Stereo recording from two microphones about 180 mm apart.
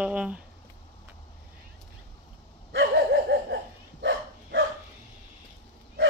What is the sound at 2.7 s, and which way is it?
Dog, 60° right (ahead or behind).